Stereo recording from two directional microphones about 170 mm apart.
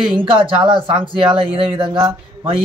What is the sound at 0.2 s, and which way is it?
A man's voice, 30° right (ahead or behind).